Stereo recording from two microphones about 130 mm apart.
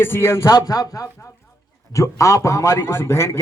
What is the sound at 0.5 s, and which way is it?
A man's voice, 30° left (ahead or behind).